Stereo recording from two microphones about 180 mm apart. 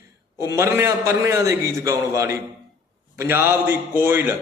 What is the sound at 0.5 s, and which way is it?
A man's voice, 15° right (ahead or behind).